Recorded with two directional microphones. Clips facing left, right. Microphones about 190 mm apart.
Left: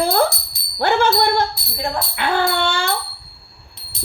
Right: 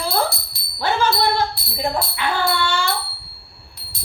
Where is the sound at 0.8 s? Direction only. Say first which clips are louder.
Left 3 dB; 55° left (ahead or behind).